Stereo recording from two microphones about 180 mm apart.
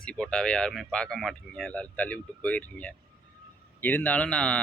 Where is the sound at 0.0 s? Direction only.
5° left (ahead or behind).